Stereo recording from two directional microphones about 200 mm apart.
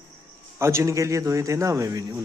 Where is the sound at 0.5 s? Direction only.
15° right (ahead or behind).